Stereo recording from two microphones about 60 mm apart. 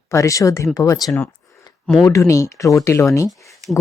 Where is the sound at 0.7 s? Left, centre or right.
Left.